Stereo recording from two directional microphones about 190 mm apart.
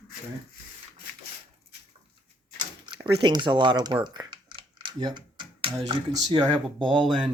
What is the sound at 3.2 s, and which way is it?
Speech, 25° right (ahead or behind).